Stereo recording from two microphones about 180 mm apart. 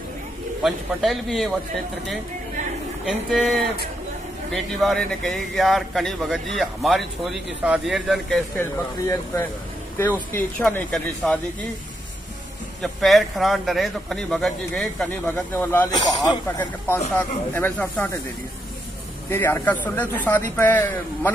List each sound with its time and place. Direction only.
0.6 s a man's voice: centre (ahead or behind)
3.1 s a man's voice: centre (ahead or behind)
9.0 s speech: 15° left (ahead or behind)
12.8 s a man's voice: centre (ahead or behind)
15.9 s speech: 20° left (ahead or behind)
17.2 s speech: 10° left (ahead or behind)
19.3 s speech: 15° left (ahead or behind)